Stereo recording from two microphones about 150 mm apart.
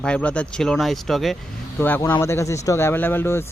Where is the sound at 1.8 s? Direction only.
15° left (ahead or behind).